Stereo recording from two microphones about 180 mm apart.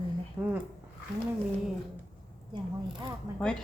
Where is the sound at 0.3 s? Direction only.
10° right (ahead or behind).